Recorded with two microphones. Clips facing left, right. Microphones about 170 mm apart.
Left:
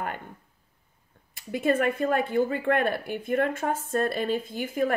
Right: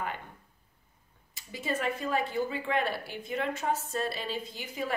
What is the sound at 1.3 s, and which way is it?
Speech, 55° left (ahead or behind).